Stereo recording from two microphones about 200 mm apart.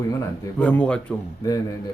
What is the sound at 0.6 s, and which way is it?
Speech, 5° left (ahead or behind).